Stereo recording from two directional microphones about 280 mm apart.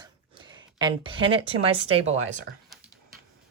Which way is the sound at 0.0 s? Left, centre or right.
Centre.